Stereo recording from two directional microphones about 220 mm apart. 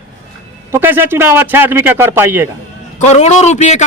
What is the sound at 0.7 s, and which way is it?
A man's voice, 10° right (ahead or behind).